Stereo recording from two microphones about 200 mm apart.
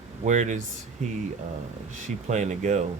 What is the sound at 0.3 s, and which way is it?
Speech, 40° right (ahead or behind).